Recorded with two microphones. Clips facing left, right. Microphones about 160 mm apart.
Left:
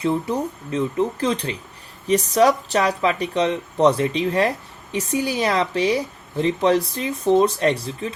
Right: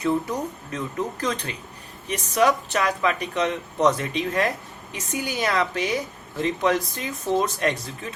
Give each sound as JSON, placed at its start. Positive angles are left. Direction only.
{"t": 0.0, "sound": "speech", "side_deg": 25}